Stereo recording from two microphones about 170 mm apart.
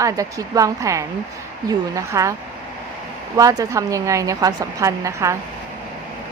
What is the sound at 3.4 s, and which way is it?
A woman's voice, 20° right (ahead or behind).